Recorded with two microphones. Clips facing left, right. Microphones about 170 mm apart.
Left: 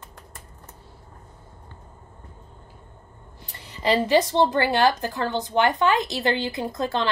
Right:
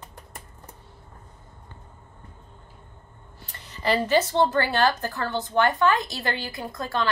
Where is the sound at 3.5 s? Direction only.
15° left (ahead or behind).